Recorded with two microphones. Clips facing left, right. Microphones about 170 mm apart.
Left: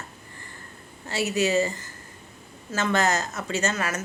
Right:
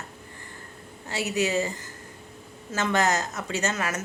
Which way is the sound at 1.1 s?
15° right (ahead or behind).